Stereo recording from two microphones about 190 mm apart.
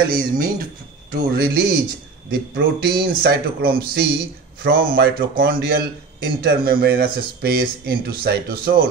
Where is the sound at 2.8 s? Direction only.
55° right (ahead or behind).